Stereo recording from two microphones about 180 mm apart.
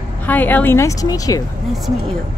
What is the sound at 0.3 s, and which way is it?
Speech, 10° left (ahead or behind).